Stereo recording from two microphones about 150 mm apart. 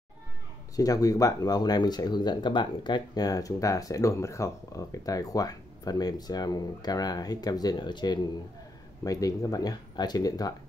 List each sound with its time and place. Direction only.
0.7 s speech: 25° left (ahead or behind)